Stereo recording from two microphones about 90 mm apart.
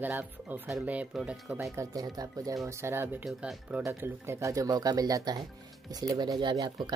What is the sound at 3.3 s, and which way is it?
Speech, 15° right (ahead or behind).